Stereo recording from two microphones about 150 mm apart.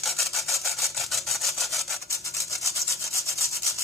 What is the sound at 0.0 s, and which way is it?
Sawing, centre (ahead or behind).